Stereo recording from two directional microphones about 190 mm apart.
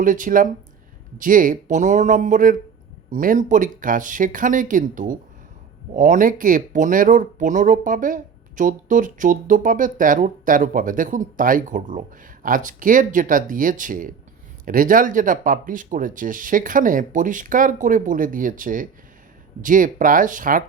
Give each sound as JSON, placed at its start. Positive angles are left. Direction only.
{"t": 0.0, "sound": "speech", "side_deg": -45}